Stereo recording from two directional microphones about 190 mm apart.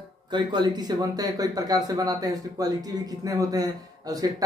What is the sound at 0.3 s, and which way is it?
A man's voice, 25° right (ahead or behind).